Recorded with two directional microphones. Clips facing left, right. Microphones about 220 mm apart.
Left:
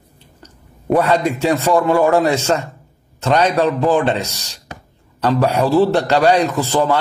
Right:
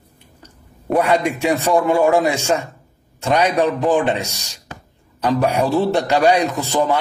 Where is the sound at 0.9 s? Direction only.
15° right (ahead or behind).